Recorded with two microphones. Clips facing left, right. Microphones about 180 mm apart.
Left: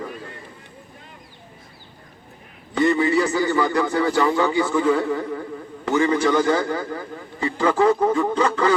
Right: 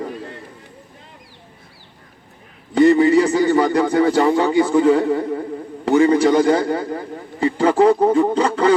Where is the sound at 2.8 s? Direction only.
35° right (ahead or behind).